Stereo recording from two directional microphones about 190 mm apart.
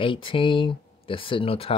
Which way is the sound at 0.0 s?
25° left (ahead or behind).